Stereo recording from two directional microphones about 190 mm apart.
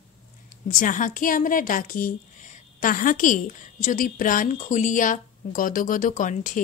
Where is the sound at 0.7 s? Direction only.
45° left (ahead or behind).